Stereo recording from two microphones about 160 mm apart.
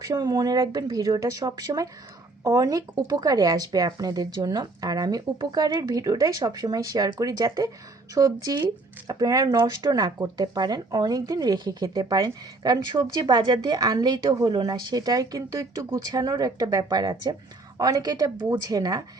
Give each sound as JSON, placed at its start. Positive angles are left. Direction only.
{"t": 0.0, "sound": "speech", "side_deg": -25}